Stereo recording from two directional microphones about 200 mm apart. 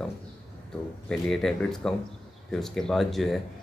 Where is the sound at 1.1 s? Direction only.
Centre (ahead or behind).